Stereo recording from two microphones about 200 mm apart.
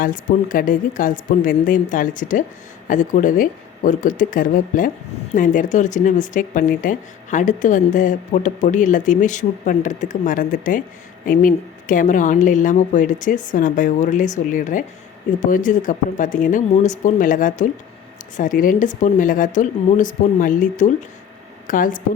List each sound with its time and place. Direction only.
0.0 s speech: 45° left (ahead or behind)